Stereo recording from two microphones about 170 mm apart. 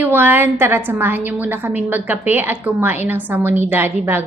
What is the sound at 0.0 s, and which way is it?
A woman's voice, 10° right (ahead or behind).